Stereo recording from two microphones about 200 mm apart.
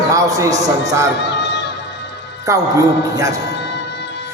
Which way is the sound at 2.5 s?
15° right (ahead or behind).